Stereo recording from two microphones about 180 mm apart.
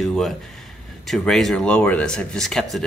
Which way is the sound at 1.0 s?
Centre (ahead or behind).